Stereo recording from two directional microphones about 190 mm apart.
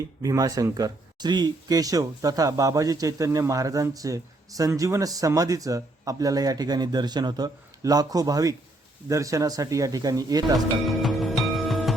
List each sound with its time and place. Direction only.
0.2 s speech: 20° right (ahead or behind)
10.8 s music: centre (ahead or behind)